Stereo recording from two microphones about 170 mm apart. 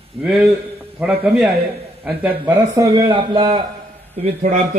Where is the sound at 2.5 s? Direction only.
20° right (ahead or behind).